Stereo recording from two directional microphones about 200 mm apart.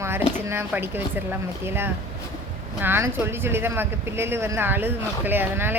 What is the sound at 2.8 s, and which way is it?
Speech, 10° right (ahead or behind).